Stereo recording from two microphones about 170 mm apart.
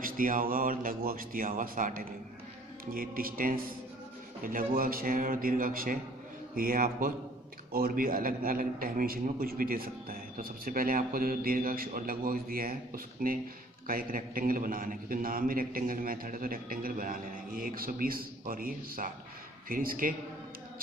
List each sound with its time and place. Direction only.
0.0 s a man's voice: 55° right (ahead or behind)